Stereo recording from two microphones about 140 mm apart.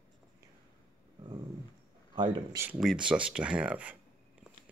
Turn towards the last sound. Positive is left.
turn(degrees=-10)  # may be behind; listen again after turning